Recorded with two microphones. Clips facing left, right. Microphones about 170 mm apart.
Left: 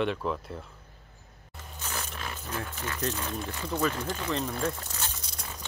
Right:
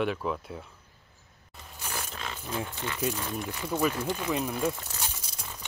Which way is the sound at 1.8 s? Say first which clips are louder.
Even; 10° right (ahead or behind).